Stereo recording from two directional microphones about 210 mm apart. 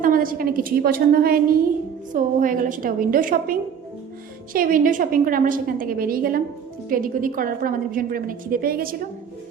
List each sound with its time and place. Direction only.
0.0 s a woman's voice: 40° right (ahead or behind)